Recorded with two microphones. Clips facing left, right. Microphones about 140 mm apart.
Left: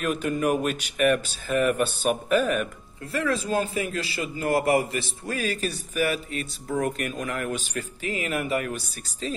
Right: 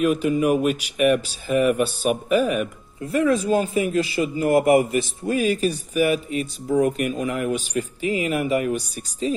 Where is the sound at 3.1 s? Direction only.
20° right (ahead or behind).